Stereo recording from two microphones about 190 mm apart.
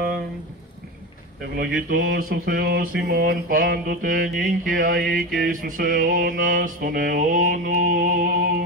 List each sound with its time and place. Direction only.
1.6 s mantra: 50° right (ahead or behind)